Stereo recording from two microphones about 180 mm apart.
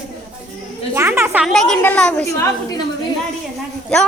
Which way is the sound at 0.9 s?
10° right (ahead or behind).